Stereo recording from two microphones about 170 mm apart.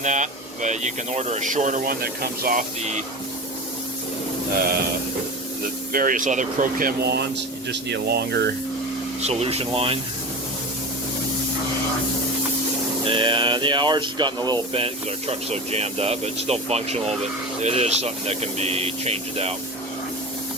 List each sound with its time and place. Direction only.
0.0 s speech: 45° right (ahead or behind)
5.9 s speech: 55° right (ahead or behind); by 8.4 s 75° right (ahead or behind)
9.2 s speech: 35° right (ahead or behind)
13.1 s speech: 30° right (ahead or behind)